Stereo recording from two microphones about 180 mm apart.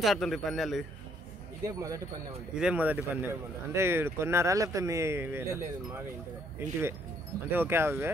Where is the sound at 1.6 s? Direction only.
20° right (ahead or behind).